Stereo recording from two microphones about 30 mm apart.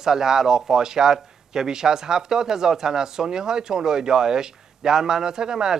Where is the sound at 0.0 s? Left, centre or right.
Centre.